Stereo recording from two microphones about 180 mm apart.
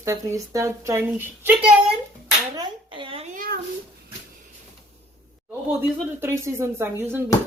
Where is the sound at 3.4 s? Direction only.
55° right (ahead or behind).